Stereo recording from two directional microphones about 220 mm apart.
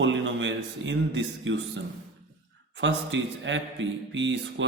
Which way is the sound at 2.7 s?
55° right (ahead or behind).